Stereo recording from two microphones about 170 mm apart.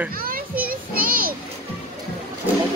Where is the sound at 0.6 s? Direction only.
60° right (ahead or behind).